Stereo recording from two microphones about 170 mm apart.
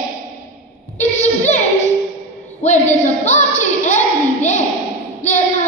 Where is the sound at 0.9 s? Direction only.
40° left (ahead or behind).